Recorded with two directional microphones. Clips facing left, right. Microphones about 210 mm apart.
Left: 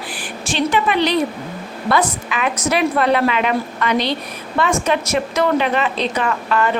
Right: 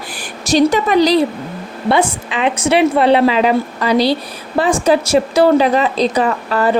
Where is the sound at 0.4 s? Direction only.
40° right (ahead or behind).